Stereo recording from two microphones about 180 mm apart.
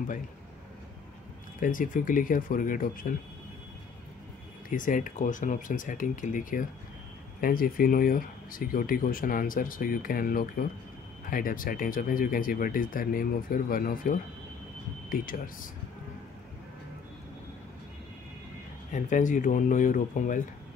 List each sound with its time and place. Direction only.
1.6 s speech: 50° left (ahead or behind)
4.6 s speech: 50° left (ahead or behind)
18.9 s speech: 45° left (ahead or behind)